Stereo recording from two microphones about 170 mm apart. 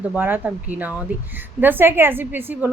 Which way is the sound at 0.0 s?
10° right (ahead or behind).